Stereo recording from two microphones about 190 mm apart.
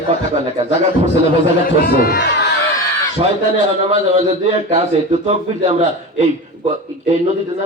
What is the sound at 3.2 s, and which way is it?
A man's voice, 30° right (ahead or behind).